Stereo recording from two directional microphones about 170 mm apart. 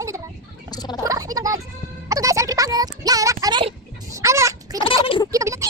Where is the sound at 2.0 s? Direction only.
20° right (ahead or behind).